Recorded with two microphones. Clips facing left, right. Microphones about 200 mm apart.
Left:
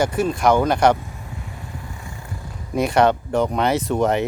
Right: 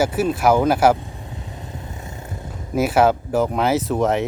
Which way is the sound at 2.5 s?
5° right (ahead or behind).